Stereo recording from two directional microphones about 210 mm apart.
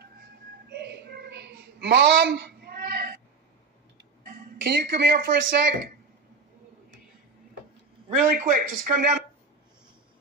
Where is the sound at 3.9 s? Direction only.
50° right (ahead or behind).